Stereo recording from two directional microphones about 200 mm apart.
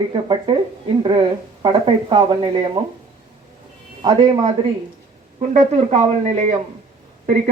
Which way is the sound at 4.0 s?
20° right (ahead or behind).